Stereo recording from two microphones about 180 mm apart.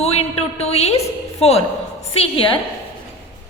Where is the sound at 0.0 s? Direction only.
35° left (ahead or behind).